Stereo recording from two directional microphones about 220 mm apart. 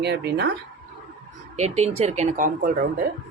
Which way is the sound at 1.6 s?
30° right (ahead or behind).